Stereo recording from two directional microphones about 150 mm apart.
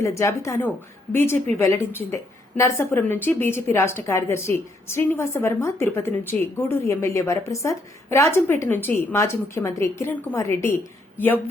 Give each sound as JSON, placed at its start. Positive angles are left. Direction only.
{"t": 0.0, "sound": "a woman's voice", "side_deg": 20}